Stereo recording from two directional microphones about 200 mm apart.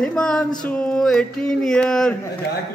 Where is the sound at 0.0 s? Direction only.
5° left (ahead or behind).